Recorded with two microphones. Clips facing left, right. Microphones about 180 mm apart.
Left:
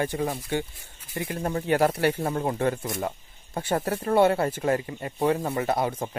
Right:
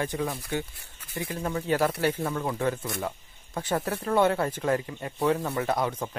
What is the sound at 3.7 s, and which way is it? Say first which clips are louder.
Speech: left 2 dB; 30° left (ahead or behind).